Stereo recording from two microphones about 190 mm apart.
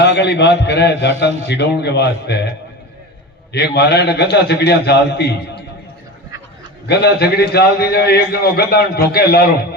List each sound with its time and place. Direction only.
0.0 s a man's voice: 65° left (ahead or behind)
3.5 s a man's voice: 60° left (ahead or behind)
6.8 s a man's voice: 60° left (ahead or behind)